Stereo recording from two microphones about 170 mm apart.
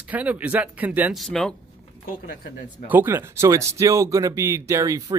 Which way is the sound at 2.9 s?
15° right (ahead or behind).